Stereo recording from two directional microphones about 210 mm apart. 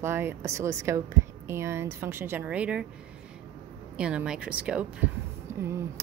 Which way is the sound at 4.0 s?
5° right (ahead or behind).